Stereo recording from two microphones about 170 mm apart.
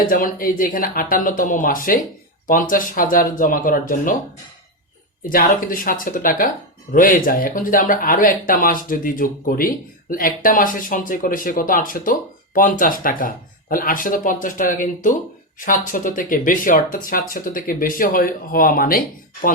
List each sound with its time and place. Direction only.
0.1 s speech: 55° left (ahead or behind)
5.2 s speech: 55° left (ahead or behind)